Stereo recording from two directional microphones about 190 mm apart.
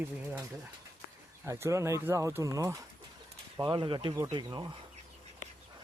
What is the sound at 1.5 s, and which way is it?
Speech, 15° right (ahead or behind).